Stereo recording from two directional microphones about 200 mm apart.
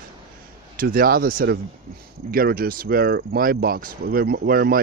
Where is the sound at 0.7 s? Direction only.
45° right (ahead or behind).